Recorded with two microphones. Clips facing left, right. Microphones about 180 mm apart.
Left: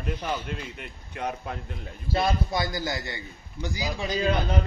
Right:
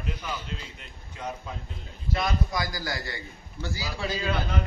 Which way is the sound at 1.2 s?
65° left (ahead or behind).